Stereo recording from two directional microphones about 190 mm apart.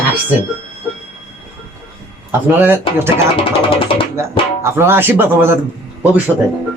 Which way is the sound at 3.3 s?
30° left (ahead or behind).